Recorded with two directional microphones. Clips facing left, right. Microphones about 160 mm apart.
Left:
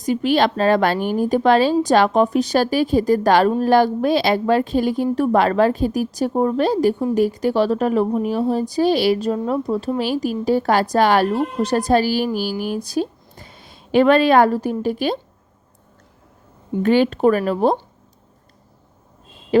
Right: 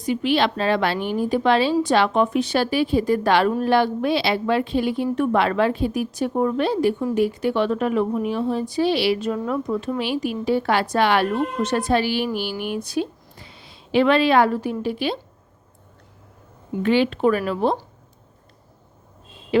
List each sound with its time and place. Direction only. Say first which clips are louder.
0.0 s a woman's voice: left 3 dB; 40° left (ahead or behind)
16.8 s a woman's voice: left 3 dB; 45° left (ahead or behind)